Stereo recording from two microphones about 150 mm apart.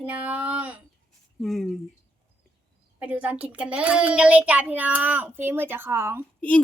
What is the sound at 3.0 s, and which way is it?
A child's voice, 10° right (ahead or behind).